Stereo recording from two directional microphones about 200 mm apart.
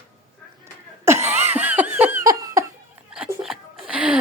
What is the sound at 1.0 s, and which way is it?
Laughter, 10° right (ahead or behind).